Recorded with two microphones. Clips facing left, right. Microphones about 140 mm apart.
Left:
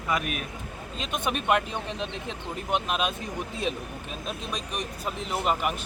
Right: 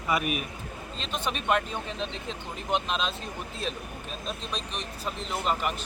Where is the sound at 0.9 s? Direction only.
10° left (ahead or behind).